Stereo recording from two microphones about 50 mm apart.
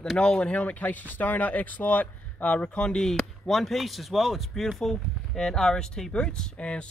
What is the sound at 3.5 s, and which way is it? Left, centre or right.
Speech, centre.